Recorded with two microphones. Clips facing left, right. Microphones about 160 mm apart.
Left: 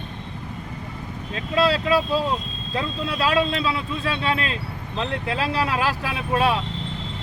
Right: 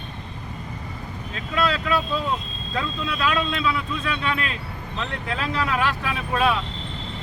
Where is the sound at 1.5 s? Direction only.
35° left (ahead or behind).